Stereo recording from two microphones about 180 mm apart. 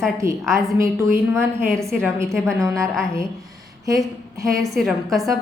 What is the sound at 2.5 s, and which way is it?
Speech, 15° right (ahead or behind).